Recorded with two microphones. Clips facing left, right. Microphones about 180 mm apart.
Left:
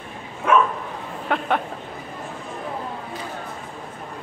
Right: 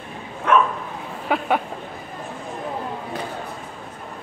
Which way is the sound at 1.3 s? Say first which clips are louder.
Right 2 dB; 5° right (ahead or behind).